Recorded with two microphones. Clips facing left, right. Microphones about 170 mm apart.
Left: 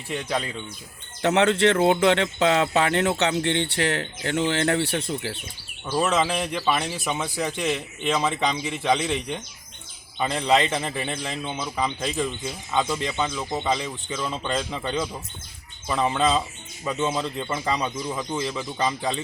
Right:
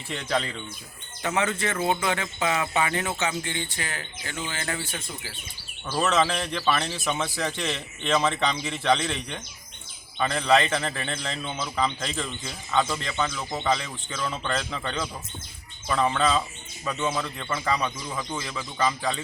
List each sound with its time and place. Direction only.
0.1 s speech: 10° left (ahead or behind)
1.2 s speech: 70° left (ahead or behind)
6.0 s speech: 10° left (ahead or behind)